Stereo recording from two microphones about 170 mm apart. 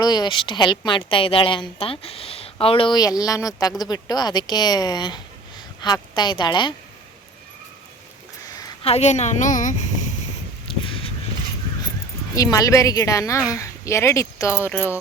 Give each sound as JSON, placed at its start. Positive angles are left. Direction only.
{"t": 0.0, "sound": "a woman's voice", "side_deg": 25}
{"t": 8.8, "sound": "a woman's voice", "side_deg": 40}
{"t": 10.7, "sound": "a sound", "side_deg": 30}
{"t": 12.3, "sound": "a woman's voice", "side_deg": 20}